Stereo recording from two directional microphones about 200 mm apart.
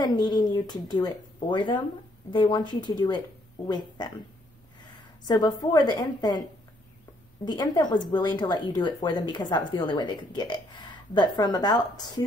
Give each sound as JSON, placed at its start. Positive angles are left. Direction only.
{"t": 0.0, "sound": "speech", "side_deg": 20}
{"t": 5.2, "sound": "speech", "side_deg": 20}
{"t": 7.4, "sound": "speech", "side_deg": 20}